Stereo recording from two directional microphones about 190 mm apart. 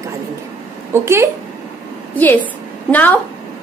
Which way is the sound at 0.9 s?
15° right (ahead or behind).